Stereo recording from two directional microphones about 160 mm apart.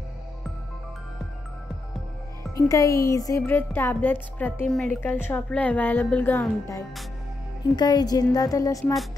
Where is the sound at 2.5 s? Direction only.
20° left (ahead or behind).